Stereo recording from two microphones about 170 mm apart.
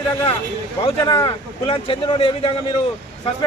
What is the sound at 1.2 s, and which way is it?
Speech, 30° left (ahead or behind).